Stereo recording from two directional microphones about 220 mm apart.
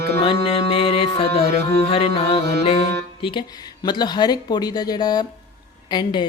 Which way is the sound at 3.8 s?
20° left (ahead or behind).